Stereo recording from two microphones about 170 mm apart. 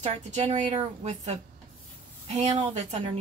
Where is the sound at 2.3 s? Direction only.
40° right (ahead or behind).